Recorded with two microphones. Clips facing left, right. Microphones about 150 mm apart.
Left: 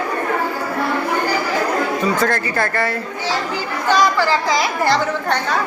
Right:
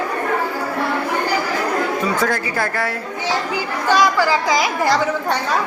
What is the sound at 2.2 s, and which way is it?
A woman's voice, 10° right (ahead or behind).